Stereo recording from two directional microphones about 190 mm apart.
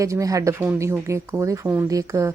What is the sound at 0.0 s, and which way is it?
Speech, 15° right (ahead or behind).